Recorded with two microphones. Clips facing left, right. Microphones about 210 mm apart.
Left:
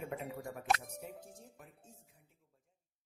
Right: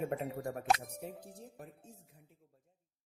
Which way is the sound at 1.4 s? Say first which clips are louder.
Right 6 dB; 40° right (ahead or behind).